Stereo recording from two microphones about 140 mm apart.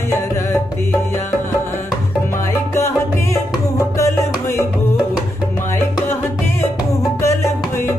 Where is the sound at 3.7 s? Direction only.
25° left (ahead or behind).